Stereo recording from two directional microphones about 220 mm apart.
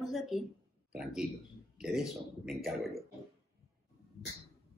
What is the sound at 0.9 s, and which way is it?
A man's voice, 5° right (ahead or behind).